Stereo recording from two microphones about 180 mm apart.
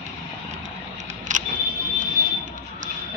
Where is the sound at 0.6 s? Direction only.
40° right (ahead or behind).